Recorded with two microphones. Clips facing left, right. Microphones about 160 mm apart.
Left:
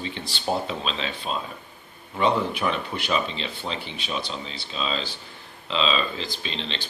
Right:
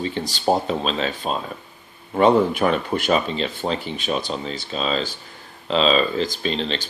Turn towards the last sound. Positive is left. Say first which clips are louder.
# right 8 dB
turn(degrees=-45)  # may be behind; listen again after turning